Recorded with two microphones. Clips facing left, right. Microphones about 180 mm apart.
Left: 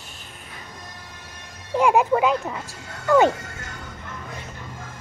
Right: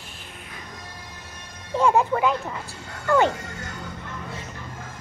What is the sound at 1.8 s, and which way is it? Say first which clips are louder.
Speech: left 2 dB; 15° left (ahead or behind).